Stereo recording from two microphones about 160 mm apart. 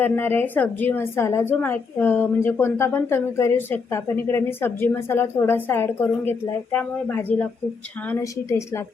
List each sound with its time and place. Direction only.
0.0 s a woman's voice: 15° left (ahead or behind)